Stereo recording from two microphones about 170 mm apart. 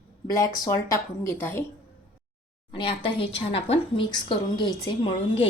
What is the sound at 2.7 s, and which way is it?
A woman's voice, 30° left (ahead or behind).